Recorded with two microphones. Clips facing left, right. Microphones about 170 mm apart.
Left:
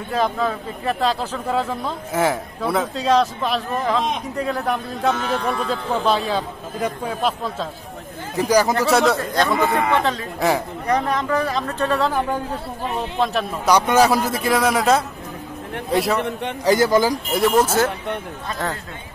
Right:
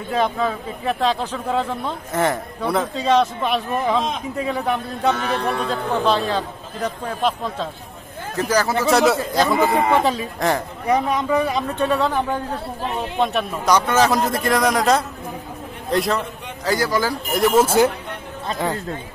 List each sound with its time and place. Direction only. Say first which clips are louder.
0.1 s speech: even; centre (ahead or behind)
5.1 s a man's voice: even; 65° right (ahead or behind)
5.4 s a man's voice: right 1 dB; centre (ahead or behind)
8.7 s speech: right 1 dB; centre (ahead or behind)
9.7 s speech: right 2 dB; 15° right (ahead or behind)
13.7 s speech: left 2 dB; 10° left (ahead or behind)
16.6 s speech: left 4 dB; 25° left (ahead or behind)
17.3 s speech: right 2 dB; centre (ahead or behind)
17.6 s speech: right 3 dB; 15° right (ahead or behind)